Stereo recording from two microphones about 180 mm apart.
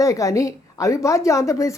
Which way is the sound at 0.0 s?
20° left (ahead or behind).